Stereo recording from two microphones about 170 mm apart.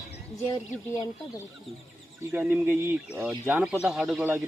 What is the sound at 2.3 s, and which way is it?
Speech, 10° right (ahead or behind).